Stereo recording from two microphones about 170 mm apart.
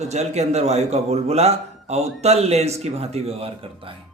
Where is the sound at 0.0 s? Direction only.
40° right (ahead or behind).